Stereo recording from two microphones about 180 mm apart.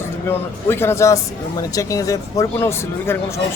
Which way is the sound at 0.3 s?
15° left (ahead or behind).